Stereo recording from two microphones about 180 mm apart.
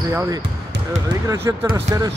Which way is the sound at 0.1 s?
15° right (ahead or behind).